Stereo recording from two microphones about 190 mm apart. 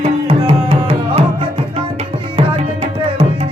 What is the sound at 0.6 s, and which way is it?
Tabla, 25° right (ahead or behind).